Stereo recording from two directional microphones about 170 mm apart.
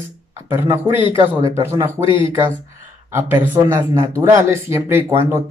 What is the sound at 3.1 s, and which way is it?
Speech, 15° right (ahead or behind).